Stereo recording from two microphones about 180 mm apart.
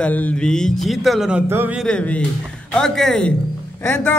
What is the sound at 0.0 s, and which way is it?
A man's voice, 10° left (ahead or behind).